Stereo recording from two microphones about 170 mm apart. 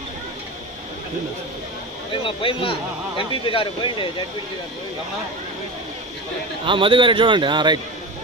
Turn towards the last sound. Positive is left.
turn(degrees=-25)  # may be behind; listen again after turning